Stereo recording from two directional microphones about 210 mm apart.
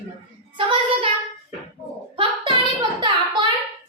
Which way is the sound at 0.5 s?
25° right (ahead or behind).